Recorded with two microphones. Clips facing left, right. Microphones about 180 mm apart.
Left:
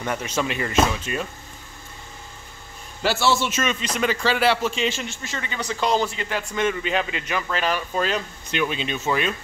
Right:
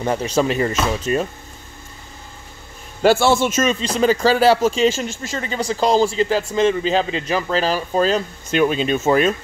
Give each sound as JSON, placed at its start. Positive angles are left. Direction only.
{"t": 0.0, "sound": "speech", "side_deg": -30}
{"t": 3.0, "sound": "a man's voice", "side_deg": -50}
{"t": 3.8, "sound": "speech", "side_deg": -35}